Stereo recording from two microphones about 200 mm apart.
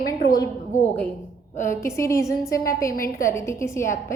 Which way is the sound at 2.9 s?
45° left (ahead or behind).